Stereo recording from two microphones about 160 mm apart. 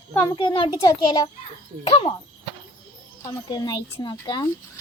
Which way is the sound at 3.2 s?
20° left (ahead or behind).